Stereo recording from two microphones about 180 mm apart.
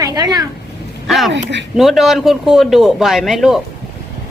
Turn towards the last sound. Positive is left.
turn(degrees=0)  # may be behind; listen again after turning